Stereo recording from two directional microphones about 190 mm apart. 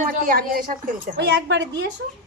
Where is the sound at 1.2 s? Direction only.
60° right (ahead or behind).